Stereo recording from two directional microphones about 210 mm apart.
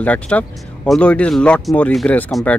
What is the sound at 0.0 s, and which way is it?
Speech, 5° left (ahead or behind).